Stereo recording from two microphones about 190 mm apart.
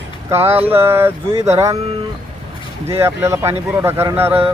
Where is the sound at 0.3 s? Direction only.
10° right (ahead or behind).